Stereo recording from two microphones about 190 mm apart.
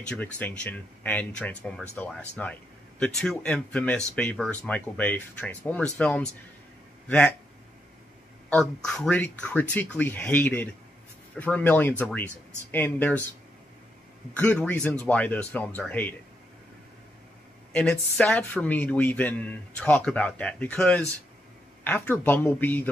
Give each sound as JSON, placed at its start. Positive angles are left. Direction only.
{"t": 0.0, "sound": "speech", "side_deg": 5}
{"t": 8.5, "sound": "speech", "side_deg": 5}
{"t": 14.3, "sound": "speech", "side_deg": 5}
{"t": 17.7, "sound": "speech", "side_deg": 5}